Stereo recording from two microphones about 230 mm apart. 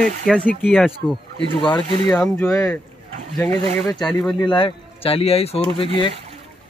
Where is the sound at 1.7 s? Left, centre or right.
Centre.